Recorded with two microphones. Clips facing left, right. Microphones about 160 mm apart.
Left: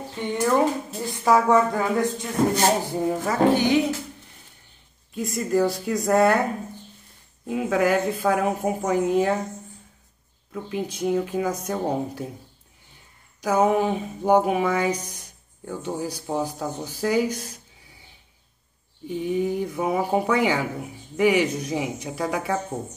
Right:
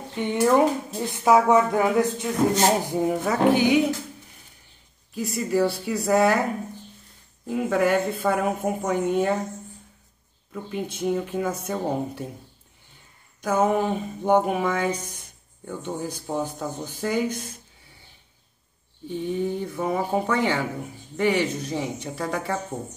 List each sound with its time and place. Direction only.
0.2 s speech: 20° right (ahead or behind)
5.1 s speech: centre (ahead or behind)
7.4 s speech: centre (ahead or behind)
10.5 s speech: centre (ahead or behind)
13.4 s speech: 5° left (ahead or behind)
15.1 s a sound: 5° right (ahead or behind)
15.7 s speech: 5° left (ahead or behind)
19.0 s speech: 10° left (ahead or behind)